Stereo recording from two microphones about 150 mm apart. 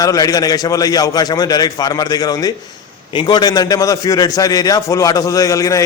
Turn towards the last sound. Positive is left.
turn(degrees=20)  # may be behind; listen again after turning